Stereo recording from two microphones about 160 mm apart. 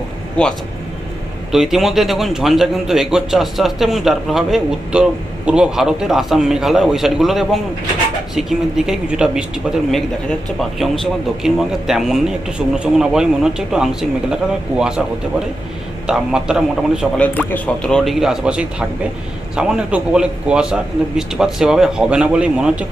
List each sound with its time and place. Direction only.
0.4 s speech: 5° left (ahead or behind)
1.5 s speech: centre (ahead or behind)
16.0 s speech: 5° right (ahead or behind)
17.2 s speech: 10° left (ahead or behind); by 22.9 s 5° right (ahead or behind)